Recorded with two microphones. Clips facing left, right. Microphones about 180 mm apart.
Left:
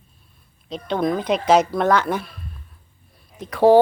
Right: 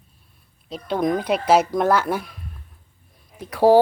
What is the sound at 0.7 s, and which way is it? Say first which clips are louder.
Speech: even; 5° right (ahead or behind).